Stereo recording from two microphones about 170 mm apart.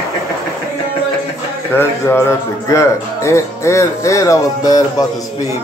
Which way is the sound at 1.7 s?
15° left (ahead or behind).